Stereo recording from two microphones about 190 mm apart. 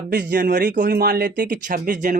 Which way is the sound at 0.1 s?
60° right (ahead or behind).